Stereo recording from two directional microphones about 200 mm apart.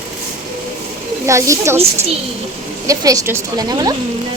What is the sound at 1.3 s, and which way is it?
Speech, 15° right (ahead or behind).